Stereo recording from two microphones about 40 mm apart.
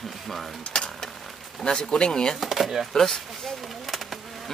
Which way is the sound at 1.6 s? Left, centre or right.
Left.